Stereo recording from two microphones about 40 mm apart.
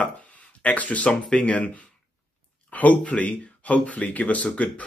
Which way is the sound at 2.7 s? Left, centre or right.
Left.